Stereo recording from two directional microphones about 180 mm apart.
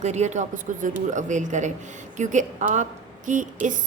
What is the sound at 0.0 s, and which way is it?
Speech, 40° right (ahead or behind).